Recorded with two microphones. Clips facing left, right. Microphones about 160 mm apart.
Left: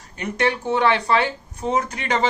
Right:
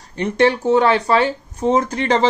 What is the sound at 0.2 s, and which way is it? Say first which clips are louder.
Speech: right 7 dB; 35° right (ahead or behind).